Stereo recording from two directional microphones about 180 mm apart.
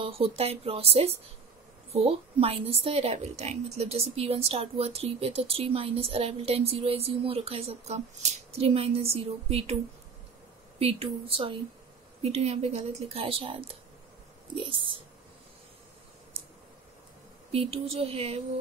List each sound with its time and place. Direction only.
0.0 s a woman's voice: 30° right (ahead or behind)
10.8 s a woman's voice: 35° right (ahead or behind)
17.5 s a woman's voice: 35° right (ahead or behind)